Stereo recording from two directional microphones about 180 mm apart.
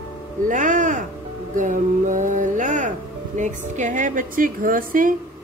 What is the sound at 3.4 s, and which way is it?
A woman's voice, 45° right (ahead or behind).